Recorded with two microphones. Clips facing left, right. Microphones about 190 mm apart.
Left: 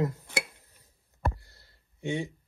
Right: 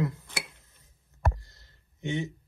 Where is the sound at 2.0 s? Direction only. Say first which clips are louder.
Even; 30° left (ahead or behind).